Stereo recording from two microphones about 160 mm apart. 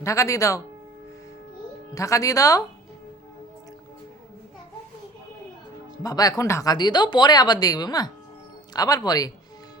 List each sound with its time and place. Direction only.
0.0 s speech: 20° left (ahead or behind)
2.0 s speech: 20° left (ahead or behind)
6.0 s speech: 25° left (ahead or behind)